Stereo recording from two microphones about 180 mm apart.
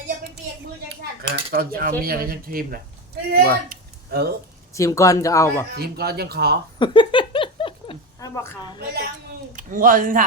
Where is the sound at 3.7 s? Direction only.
60° right (ahead or behind).